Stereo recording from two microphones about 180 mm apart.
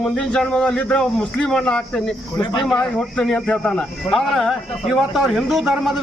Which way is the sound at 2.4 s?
25° left (ahead or behind).